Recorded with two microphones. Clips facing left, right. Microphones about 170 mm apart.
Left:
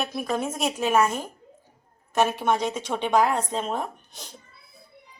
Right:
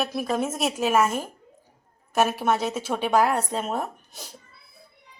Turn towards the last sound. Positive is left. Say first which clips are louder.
# right 1 dB
turn(degrees=-5)  # may be behind; listen again after turning